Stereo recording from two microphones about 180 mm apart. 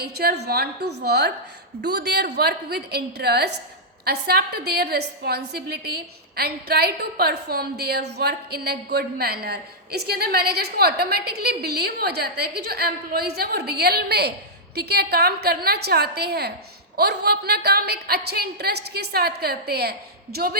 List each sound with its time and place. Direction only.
0.0 s a woman's voice: 60° right (ahead or behind)